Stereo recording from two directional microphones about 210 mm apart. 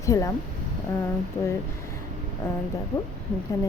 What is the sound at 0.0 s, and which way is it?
Speech, 15° left (ahead or behind).